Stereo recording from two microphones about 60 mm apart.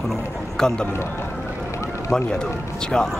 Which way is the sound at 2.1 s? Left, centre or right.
Centre.